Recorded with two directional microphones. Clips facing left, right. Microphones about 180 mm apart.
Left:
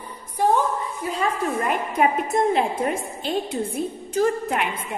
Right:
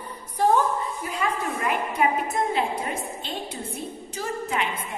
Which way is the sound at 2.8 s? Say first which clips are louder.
Left 6 dB; 50° left (ahead or behind).